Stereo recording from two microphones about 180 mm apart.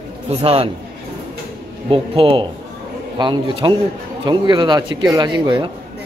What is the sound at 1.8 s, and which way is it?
A man's voice, 30° right (ahead or behind).